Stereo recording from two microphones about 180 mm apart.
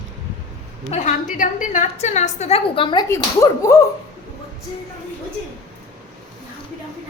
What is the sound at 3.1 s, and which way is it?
Speech, 15° left (ahead or behind).